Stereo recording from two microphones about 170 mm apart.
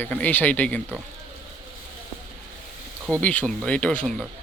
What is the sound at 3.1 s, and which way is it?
Speech, 5° left (ahead or behind).